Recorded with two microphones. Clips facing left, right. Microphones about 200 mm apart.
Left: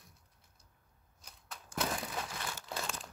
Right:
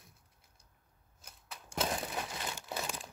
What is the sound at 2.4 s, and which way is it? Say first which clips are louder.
Crumpling: right 1 dB; 20° right (ahead or behind).